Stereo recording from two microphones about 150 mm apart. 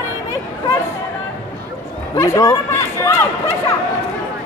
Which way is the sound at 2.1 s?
20° left (ahead or behind).